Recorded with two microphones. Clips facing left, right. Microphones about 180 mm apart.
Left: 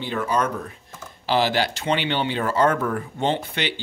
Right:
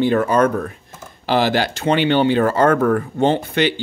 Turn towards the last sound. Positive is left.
turn(degrees=-45)  # may be behind; listen again after turning